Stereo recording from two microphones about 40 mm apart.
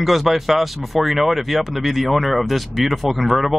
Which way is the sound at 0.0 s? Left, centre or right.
Centre.